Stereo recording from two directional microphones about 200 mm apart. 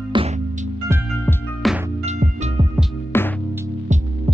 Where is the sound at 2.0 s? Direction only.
35° right (ahead or behind).